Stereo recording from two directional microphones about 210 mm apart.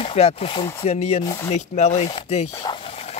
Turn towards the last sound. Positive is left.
turn(degrees=30)  # may be behind; listen again after turning